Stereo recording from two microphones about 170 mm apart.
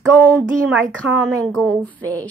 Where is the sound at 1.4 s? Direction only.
5° left (ahead or behind).